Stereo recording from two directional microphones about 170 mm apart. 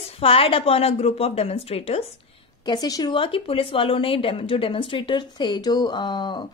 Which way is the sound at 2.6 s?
25° left (ahead or behind).